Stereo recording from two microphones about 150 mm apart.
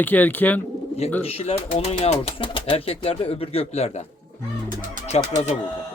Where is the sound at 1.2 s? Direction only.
40° left (ahead or behind).